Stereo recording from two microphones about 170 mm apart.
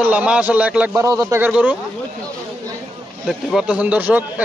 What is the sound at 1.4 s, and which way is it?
Speech, 10° right (ahead or behind).